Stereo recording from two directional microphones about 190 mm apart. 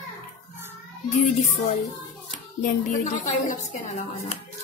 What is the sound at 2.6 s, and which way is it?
Speech, 45° left (ahead or behind).